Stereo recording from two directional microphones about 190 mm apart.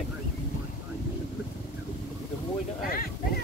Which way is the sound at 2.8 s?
50° left (ahead or behind).